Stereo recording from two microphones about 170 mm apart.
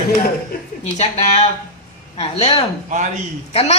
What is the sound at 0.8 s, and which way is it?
A man's voice, 40° left (ahead or behind).